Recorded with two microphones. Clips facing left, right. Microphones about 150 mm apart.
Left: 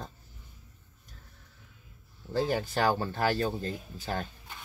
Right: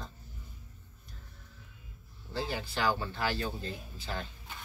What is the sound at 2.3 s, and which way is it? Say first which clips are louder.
Speech: left 7 dB; 45° left (ahead or behind).